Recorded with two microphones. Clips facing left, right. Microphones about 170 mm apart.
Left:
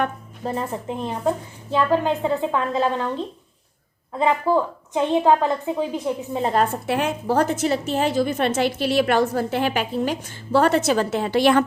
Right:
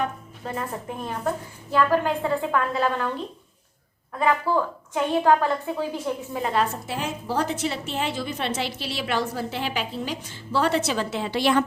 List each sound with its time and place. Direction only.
0.4 s a woman's voice: 25° left (ahead or behind)
4.1 s a woman's voice: 20° left (ahead or behind)
6.4 s a woman's voice: 45° left (ahead or behind)